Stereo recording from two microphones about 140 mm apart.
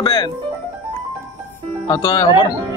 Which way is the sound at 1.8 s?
30° left (ahead or behind).